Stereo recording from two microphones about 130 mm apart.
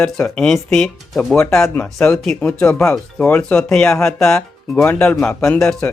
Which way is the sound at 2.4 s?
15° left (ahead or behind).